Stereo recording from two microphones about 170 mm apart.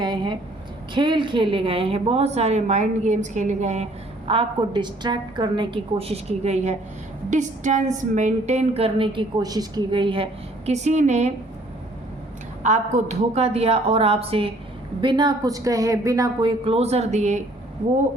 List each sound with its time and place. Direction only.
0.0 s a sound: 25° right (ahead or behind)
0.9 s a woman's voice: 30° right (ahead or behind)
4.3 s a woman's voice: 30° right (ahead or behind)
10.7 s a woman's voice: 40° right (ahead or behind)
12.6 s a woman's voice: 45° right (ahead or behind)